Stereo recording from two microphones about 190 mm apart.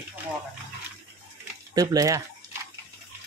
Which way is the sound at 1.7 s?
20° right (ahead or behind).